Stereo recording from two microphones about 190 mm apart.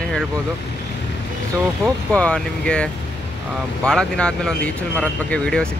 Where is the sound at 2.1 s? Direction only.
5° left (ahead or behind).